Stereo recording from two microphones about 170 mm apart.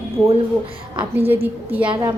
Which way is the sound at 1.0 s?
35° right (ahead or behind).